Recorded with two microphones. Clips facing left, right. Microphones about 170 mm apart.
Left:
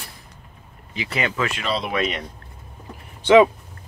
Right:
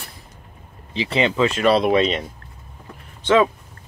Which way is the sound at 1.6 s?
55° right (ahead or behind).